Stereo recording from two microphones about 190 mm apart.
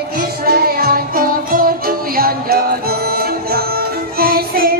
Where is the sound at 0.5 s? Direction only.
50° right (ahead or behind).